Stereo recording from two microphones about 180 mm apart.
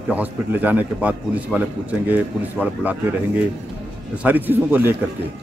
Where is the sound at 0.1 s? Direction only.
10° right (ahead or behind).